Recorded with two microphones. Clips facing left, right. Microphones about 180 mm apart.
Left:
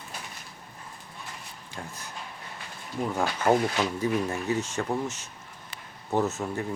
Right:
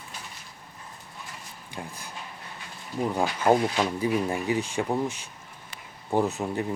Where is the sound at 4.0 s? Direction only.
15° right (ahead or behind).